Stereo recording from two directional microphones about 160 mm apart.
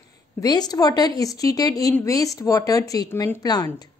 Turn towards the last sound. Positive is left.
turn(degrees=25)  # may be behind; listen again after turning